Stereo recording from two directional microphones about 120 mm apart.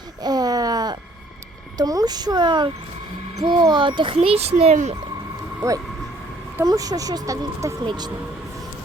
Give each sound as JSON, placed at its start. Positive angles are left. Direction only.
{"t": 0.2, "sound": "a sound", "side_deg": -35}
{"t": 1.8, "sound": "a child's voice", "side_deg": -30}
{"t": 6.7, "sound": "speech", "side_deg": -30}